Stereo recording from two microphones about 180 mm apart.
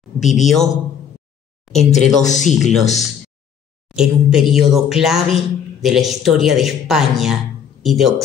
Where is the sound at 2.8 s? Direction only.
40° left (ahead or behind).